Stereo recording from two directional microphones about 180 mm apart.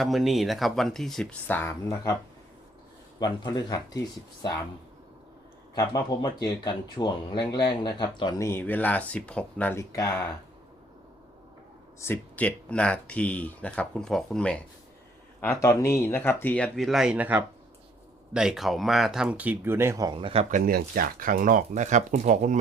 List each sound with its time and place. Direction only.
0.0 s speech: centre (ahead or behind)
3.2 s speech: 25° left (ahead or behind)
5.7 s speech: 20° left (ahead or behind)
11.9 s speech: 15° left (ahead or behind); by 20.6 s 35° right (ahead or behind)
20.7 s speech: 55° right (ahead or behind)